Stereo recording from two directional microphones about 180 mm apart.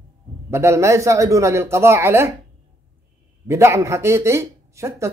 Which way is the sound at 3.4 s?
15° right (ahead or behind).